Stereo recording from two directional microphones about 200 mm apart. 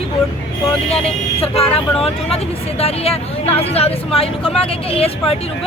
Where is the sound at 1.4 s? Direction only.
30° left (ahead or behind).